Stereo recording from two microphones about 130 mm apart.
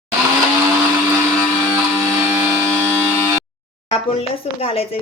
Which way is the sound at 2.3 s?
20° right (ahead or behind).